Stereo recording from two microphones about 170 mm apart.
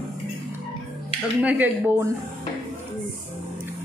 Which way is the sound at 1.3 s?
10° right (ahead or behind).